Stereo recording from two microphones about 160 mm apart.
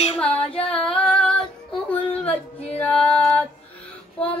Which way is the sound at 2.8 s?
5° left (ahead or behind).